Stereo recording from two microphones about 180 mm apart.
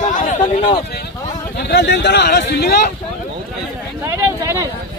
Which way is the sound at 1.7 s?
70° left (ahead or behind).